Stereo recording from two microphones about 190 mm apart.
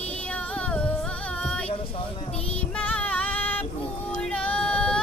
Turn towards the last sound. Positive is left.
turn(degrees=5)  # may be behind; listen again after turning